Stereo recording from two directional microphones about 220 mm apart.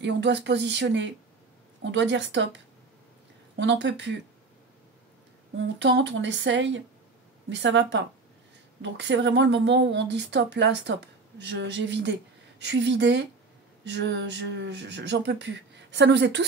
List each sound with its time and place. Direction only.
0.0 s speech: 50° right (ahead or behind)
5.6 s speech: 55° right (ahead or behind)